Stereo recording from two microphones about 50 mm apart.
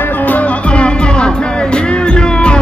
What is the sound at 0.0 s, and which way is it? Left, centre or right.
Music, left.